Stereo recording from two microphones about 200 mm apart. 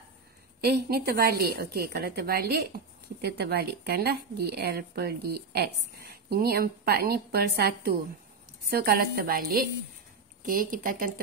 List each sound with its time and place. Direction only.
0.7 s a woman's voice: 50° right (ahead or behind)